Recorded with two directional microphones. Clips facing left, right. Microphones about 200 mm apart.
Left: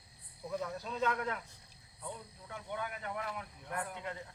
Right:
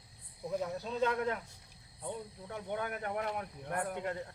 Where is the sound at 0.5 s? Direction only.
30° right (ahead or behind).